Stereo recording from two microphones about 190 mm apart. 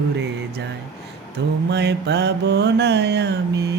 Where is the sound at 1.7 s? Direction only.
65° right (ahead or behind).